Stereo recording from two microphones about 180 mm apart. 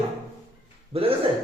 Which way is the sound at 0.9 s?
30° right (ahead or behind).